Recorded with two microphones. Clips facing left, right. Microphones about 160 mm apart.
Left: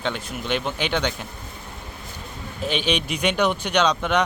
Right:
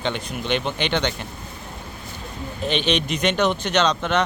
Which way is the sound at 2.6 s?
10° left (ahead or behind).